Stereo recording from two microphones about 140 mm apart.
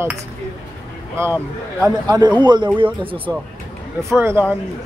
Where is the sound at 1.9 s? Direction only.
30° right (ahead or behind).